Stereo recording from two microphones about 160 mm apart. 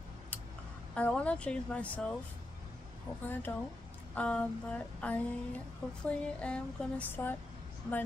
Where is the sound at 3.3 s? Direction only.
10° left (ahead or behind).